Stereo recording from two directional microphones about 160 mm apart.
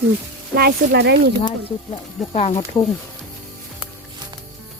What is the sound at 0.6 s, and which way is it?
Speech, 85° right.